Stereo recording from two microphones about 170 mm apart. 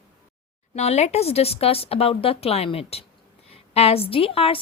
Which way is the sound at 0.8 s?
40° left (ahead or behind).